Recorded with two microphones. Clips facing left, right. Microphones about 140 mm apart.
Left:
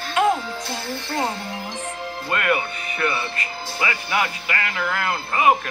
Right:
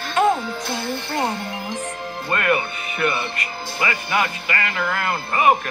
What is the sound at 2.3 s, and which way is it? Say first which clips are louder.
Speech: right 1 dB; centre (ahead or behind).